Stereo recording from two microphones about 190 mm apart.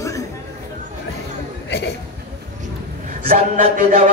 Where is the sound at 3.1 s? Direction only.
40° right (ahead or behind).